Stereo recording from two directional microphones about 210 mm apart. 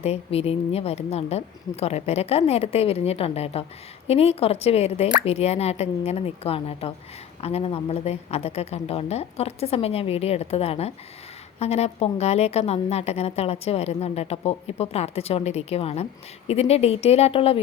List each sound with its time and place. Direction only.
0.0 s speech: 30° left (ahead or behind)